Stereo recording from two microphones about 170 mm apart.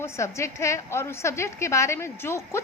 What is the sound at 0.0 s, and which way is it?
A woman's voice, 15° left (ahead or behind).